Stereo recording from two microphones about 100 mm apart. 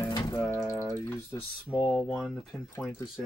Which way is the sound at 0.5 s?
25° left (ahead or behind).